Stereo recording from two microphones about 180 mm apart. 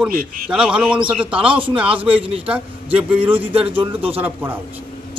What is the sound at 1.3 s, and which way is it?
Speech, 30° right (ahead or behind).